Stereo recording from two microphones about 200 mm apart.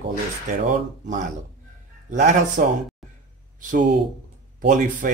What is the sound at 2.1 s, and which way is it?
Speech, 40° right (ahead or behind).